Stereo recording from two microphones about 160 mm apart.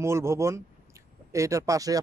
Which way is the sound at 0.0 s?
15° right (ahead or behind).